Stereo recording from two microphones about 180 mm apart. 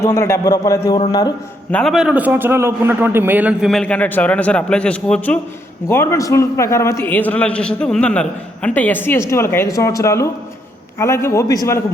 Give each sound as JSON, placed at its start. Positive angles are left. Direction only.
{"t": 0.0, "sound": "a man's voice", "side_deg": 15}
{"t": 1.7, "sound": "a man's voice", "side_deg": 0}